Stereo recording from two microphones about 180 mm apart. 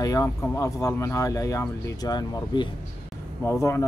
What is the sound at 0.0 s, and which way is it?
Speech, 20° left (ahead or behind).